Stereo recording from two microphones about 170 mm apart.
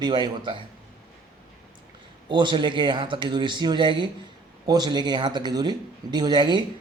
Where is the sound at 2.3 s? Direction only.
25° right (ahead or behind).